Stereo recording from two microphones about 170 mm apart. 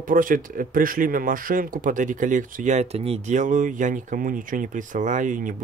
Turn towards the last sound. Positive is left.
turn(degrees=-50)  # may be behind; listen again after turning